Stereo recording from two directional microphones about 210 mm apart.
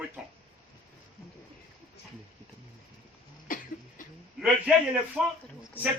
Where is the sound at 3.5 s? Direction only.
40° left (ahead or behind).